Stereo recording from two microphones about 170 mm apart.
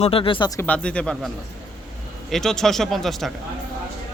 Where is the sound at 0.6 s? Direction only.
5° left (ahead or behind).